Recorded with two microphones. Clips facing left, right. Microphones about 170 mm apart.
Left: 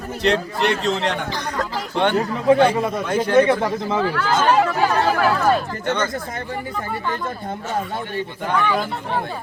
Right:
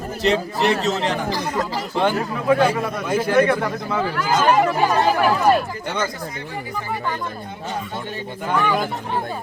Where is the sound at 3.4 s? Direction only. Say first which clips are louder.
Left 4 dB; 20° left (ahead or behind).